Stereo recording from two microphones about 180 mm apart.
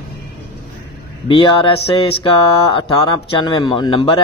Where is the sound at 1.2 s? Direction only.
30° left (ahead or behind).